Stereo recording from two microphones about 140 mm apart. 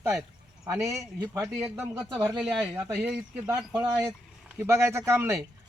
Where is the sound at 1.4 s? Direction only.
5° right (ahead or behind).